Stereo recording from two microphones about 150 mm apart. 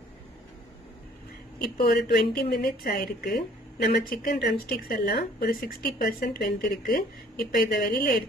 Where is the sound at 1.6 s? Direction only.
90° left.